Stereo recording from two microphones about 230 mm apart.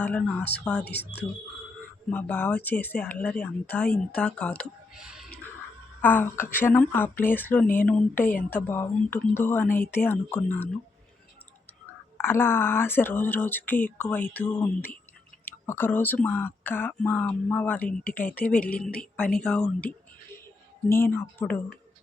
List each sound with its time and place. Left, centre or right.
0.0 s speech: centre
2.0 s speech: centre
8.2 s speech: left
8.4 s speech: centre
12.1 s speech: centre
20.9 s speech: centre